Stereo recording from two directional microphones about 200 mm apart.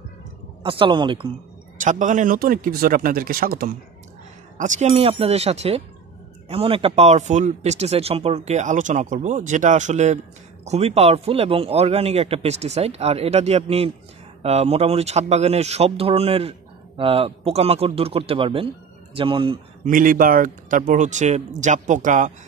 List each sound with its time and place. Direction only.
0.7 s speech: 25° right (ahead or behind)
1.8 s a man's voice: 40° right (ahead or behind)
19.8 s speech: 45° right (ahead or behind)